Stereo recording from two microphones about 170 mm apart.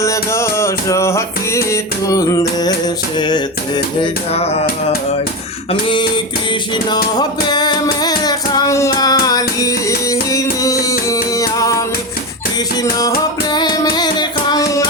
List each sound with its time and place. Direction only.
0.0 s music: 15° left (ahead or behind)
4.0 s music: 35° left (ahead or behind)
6.5 s music: 25° left (ahead or behind)
12.8 s music: 20° left (ahead or behind)